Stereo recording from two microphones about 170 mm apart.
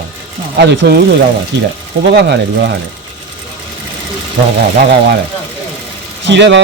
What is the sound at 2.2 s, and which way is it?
Speech, 85° right.